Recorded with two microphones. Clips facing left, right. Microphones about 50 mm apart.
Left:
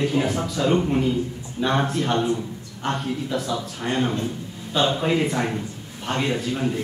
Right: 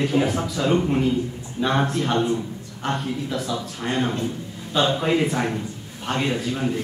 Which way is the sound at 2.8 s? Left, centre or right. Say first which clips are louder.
Even; centre.